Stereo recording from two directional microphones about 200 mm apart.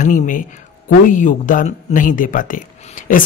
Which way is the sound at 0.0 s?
40° left (ahead or behind).